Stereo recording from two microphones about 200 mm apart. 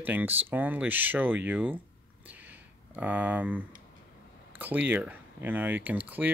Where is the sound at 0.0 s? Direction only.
10° right (ahead or behind).